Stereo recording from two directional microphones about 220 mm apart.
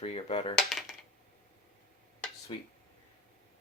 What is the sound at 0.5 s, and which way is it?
Speech, centre (ahead or behind).